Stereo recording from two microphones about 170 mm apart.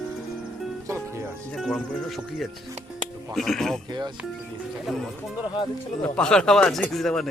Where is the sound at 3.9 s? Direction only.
25° right (ahead or behind).